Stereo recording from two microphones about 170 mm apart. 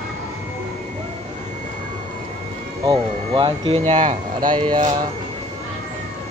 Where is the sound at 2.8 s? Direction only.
25° right (ahead or behind).